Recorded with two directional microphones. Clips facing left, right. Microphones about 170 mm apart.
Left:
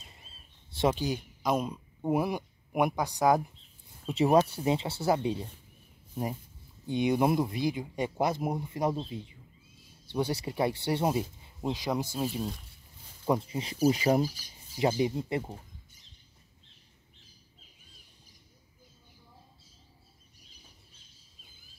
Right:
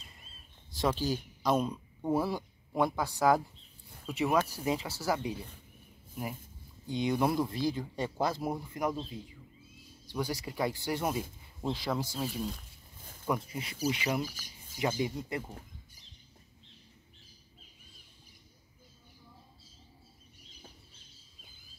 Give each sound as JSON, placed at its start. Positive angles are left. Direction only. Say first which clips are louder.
{"t": 0.7, "sound": "a man's voice", "louder": "left 3 dB", "side_deg": 20}
{"t": 1.4, "sound": "speech", "louder": "even", "side_deg": 10}
{"t": 4.0, "sound": "a man's voice", "louder": "left 6 dB", "side_deg": 30}
{"t": 6.9, "sound": "a man's voice", "louder": "left 3 dB", "side_deg": 20}
{"t": 13.3, "sound": "a man's voice", "louder": "left 5 dB", "side_deg": 30}
{"t": 14.8, "sound": "speech", "louder": "left 5 dB", "side_deg": 25}